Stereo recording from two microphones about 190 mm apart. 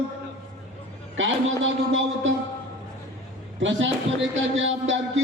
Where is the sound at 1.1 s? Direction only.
90° right.